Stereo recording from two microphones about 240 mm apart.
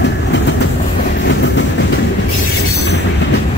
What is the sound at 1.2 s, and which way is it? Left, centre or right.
Train, left.